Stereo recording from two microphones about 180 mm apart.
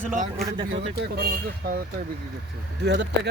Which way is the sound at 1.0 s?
60° right (ahead or behind).